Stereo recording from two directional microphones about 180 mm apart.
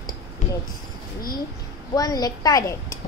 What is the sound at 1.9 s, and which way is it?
A woman's voice, 20° left (ahead or behind).